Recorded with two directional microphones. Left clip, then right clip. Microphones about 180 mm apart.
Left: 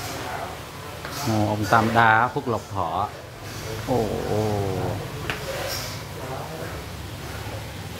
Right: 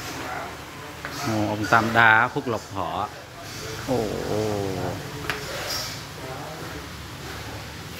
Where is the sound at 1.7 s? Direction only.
5° right (ahead or behind).